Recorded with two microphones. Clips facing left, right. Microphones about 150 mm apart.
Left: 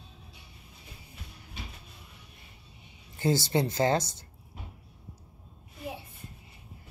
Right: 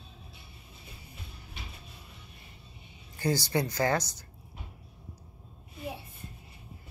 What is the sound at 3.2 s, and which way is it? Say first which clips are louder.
Speech: left 2 dB; 25° left (ahead or behind).